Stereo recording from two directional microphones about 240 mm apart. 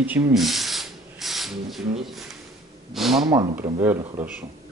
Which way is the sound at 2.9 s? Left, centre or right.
Centre.